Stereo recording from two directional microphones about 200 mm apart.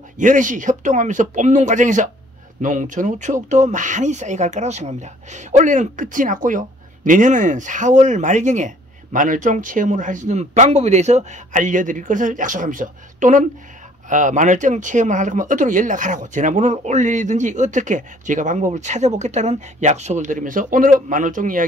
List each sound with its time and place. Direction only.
0.2 s speech: 40° right (ahead or behind)